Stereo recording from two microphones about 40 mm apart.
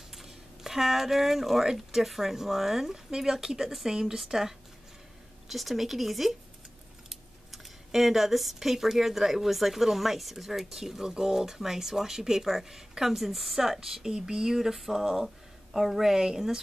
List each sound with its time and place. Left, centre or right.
0.1 s speech: centre